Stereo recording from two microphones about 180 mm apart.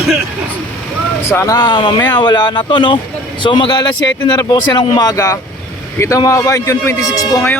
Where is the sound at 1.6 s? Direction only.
25° left (ahead or behind).